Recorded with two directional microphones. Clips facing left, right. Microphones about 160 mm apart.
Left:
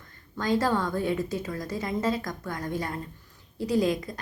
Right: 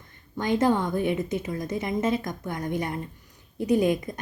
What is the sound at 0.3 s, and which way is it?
Speech, 20° right (ahead or behind).